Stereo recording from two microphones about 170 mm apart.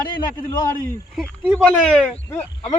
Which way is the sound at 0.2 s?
25° left (ahead or behind).